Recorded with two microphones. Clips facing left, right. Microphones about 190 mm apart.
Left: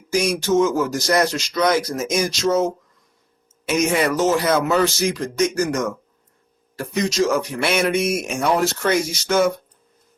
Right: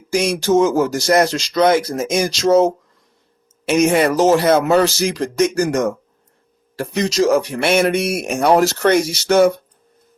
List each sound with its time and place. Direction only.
0.1 s speech: 30° right (ahead or behind)
3.7 s speech: 30° right (ahead or behind)
7.9 s speech: 60° right (ahead or behind)
8.4 s speech: 40° right (ahead or behind)
8.9 s speech: 65° right (ahead or behind)